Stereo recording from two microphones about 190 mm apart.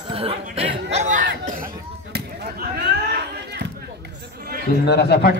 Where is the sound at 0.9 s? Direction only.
40° right (ahead or behind).